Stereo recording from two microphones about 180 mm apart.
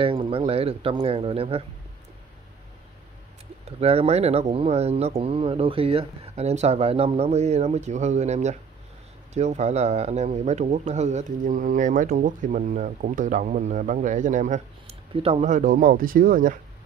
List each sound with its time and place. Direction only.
0.0 s speech: 30° right (ahead or behind)
3.8 s speech: 35° right (ahead or behind)